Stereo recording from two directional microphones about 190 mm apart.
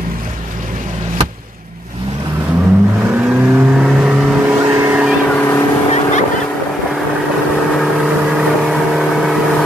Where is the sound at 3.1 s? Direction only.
10° right (ahead or behind).